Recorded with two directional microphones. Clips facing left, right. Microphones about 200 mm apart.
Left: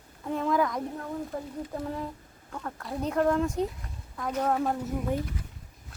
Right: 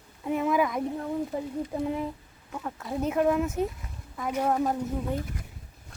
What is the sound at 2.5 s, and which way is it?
A woman's voice, 5° right (ahead or behind).